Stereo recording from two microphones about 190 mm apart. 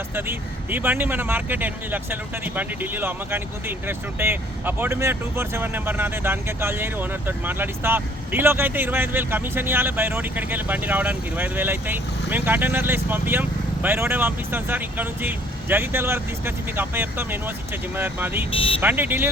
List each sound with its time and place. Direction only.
0.1 s speech: 10° right (ahead or behind)
18.5 s speech: 30° left (ahead or behind)
18.8 s speech: 10° right (ahead or behind)